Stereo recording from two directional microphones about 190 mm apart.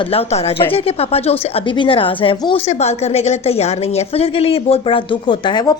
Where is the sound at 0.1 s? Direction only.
35° left (ahead or behind).